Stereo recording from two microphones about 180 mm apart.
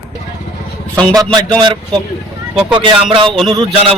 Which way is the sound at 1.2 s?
20° right (ahead or behind).